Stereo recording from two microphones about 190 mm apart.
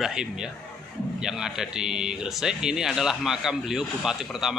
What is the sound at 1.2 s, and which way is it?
A man's voice, 5° right (ahead or behind).